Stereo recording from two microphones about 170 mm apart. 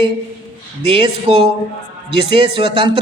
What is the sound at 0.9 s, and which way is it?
A man's voice, 30° right (ahead or behind).